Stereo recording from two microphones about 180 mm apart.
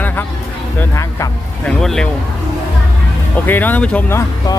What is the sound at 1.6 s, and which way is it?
Speech, 5° left (ahead or behind).